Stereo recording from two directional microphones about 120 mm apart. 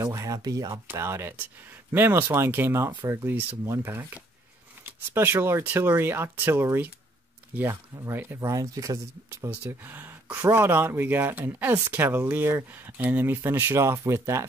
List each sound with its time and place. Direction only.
0.0 s speech: 25° right (ahead or behind)
0.8 s speech: 20° right (ahead or behind)
9.5 s speech: 15° right (ahead or behind)